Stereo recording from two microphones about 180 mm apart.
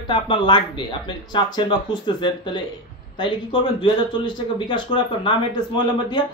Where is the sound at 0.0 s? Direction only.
25° left (ahead or behind).